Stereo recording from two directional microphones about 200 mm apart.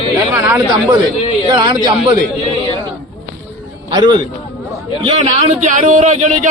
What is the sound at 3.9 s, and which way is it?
A man's voice, 20° right (ahead or behind).